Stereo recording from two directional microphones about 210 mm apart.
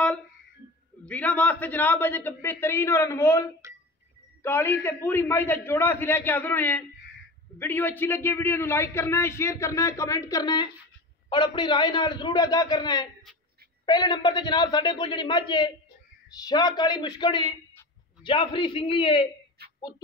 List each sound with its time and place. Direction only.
1.0 s a man's voice: 5° left (ahead or behind); by 19.2 s 25° left (ahead or behind)
19.6 s whispering: 50° right (ahead or behind)